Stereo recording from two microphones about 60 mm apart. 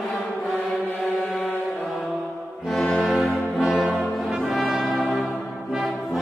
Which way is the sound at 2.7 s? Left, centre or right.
Centre.